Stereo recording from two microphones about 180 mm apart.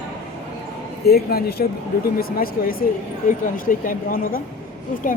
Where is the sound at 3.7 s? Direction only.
50° left (ahead or behind).